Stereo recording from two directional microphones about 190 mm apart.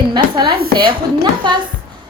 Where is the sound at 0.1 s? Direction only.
25° right (ahead or behind).